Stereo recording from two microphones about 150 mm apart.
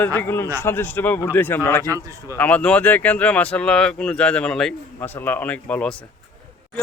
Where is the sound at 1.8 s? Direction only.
20° right (ahead or behind).